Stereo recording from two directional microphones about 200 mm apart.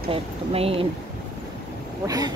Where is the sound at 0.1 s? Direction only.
30° right (ahead or behind).